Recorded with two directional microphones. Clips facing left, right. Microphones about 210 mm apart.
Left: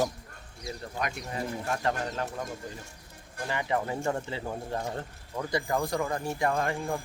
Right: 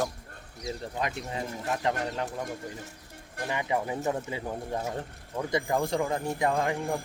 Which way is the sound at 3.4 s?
15° right (ahead or behind).